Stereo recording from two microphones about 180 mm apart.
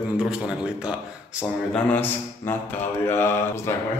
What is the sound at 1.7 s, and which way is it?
A man's voice, 10° left (ahead or behind).